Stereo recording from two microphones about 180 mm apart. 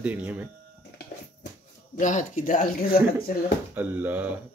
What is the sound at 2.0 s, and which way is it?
Speech, 45° left (ahead or behind).